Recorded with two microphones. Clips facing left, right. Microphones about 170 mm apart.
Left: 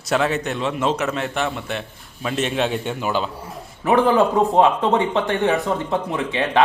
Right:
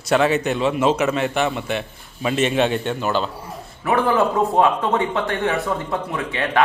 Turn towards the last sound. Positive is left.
turn(degrees=20)  # may be behind; listen again after turning